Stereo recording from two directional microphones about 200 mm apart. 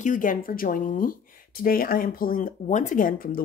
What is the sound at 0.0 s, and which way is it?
Speech, 40° left (ahead or behind).